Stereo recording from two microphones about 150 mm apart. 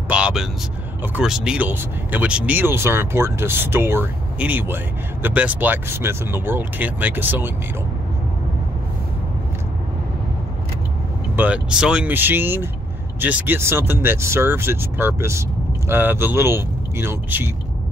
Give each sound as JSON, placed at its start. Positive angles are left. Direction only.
{"t": 0.1, "sound": "speech", "side_deg": -5}
{"t": 11.3, "sound": "speech", "side_deg": -10}